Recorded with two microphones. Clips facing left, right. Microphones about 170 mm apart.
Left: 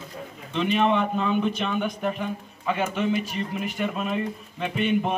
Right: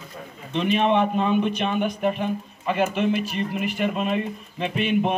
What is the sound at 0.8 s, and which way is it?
A man's voice, 15° right (ahead or behind).